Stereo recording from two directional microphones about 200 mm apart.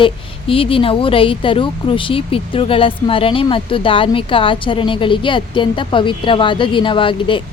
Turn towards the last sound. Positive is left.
turn(degrees=25)  # may be behind; listen again after turning